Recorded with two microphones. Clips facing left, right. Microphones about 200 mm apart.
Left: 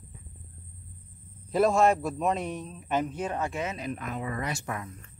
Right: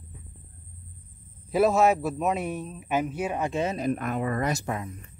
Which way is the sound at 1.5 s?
5° right (ahead or behind).